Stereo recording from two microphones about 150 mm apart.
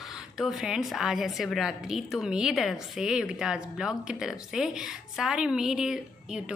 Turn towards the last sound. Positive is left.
turn(degrees=-5)  # may be behind; listen again after turning